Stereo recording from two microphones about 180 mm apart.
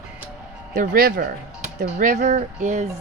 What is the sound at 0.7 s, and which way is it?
Speech, 50° right (ahead or behind).